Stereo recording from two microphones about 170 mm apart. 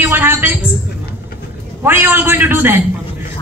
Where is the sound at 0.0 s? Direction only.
15° right (ahead or behind).